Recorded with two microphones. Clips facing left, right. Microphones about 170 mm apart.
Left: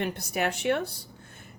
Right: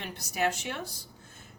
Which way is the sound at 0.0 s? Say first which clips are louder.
Left 2 dB; 60° left (ahead or behind).